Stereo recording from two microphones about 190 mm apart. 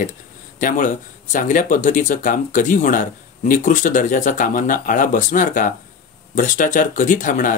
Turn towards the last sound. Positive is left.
turn(degrees=45)  # may be behind; listen again after turning